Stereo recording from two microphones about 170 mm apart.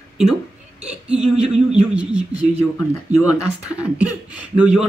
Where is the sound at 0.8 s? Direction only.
5° right (ahead or behind).